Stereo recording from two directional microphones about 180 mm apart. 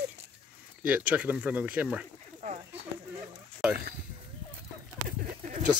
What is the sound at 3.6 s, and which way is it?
Speech, 5° right (ahead or behind).